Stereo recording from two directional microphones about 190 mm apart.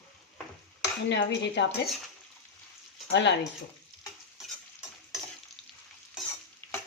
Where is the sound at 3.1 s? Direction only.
65° left (ahead or behind).